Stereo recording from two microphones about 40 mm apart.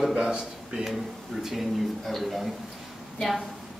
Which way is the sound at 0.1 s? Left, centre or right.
Right.